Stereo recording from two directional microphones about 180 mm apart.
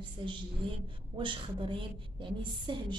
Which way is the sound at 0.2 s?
30° right (ahead or behind).